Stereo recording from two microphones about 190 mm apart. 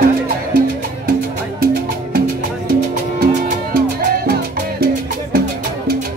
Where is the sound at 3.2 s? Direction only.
50° right (ahead or behind).